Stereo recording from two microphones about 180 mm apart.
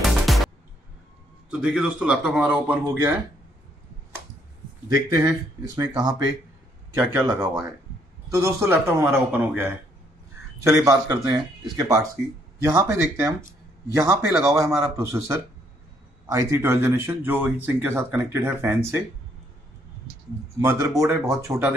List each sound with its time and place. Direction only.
0.0 s music: centre (ahead or behind)
1.5 s speech: 5° right (ahead or behind)
4.8 s speech: 15° right (ahead or behind)
7.1 s speech: 15° right (ahead or behind)
20.6 s speech: 20° right (ahead or behind)